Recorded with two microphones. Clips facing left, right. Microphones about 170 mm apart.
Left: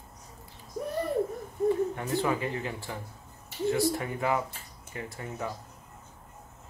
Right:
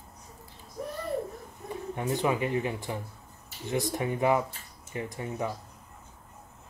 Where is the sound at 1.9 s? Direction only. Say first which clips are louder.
Right 1 dB; 20° right (ahead or behind).